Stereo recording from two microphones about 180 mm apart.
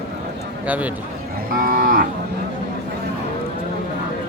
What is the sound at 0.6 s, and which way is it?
Speech, 10° right (ahead or behind).